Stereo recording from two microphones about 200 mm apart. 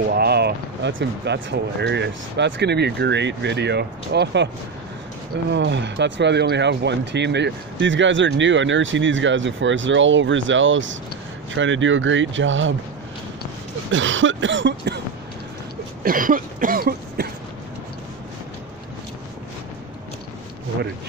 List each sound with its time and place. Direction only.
0.0 s speech: 50° right (ahead or behind)
5.5 s speech: 60° right (ahead or behind)
13.9 s throat clearing: 70° right (ahead or behind)
16.0 s cough: 45° right (ahead or behind)